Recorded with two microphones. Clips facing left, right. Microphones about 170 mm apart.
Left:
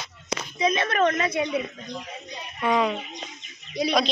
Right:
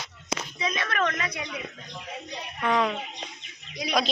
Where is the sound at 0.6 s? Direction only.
25° left (ahead or behind).